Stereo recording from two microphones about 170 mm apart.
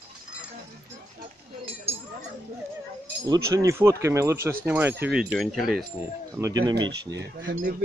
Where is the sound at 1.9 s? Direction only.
35° right (ahead or behind).